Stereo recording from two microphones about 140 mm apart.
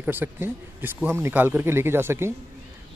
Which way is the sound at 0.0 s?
15° right (ahead or behind).